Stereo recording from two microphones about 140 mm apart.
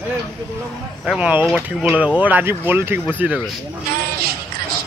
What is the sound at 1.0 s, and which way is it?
Speech, 10° right (ahead or behind).